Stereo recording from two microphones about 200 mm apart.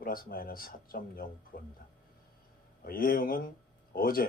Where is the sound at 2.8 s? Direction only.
45° left (ahead or behind).